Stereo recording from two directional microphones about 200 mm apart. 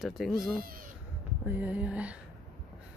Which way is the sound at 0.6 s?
45° right (ahead or behind).